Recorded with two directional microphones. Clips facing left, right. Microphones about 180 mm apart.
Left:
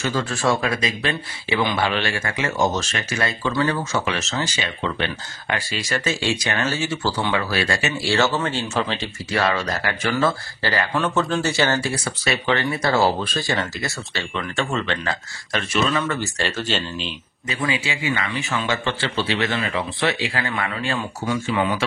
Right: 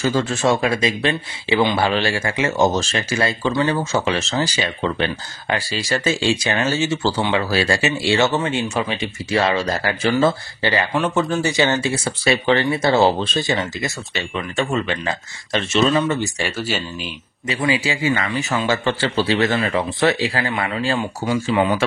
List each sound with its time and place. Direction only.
0.0 s speech: 30° right (ahead or behind)
9.3 s speech: 25° right (ahead or behind)
15.5 s speech: 25° right (ahead or behind); by 17.1 s 10° right (ahead or behind)
17.5 s a man's voice: 30° right (ahead or behind)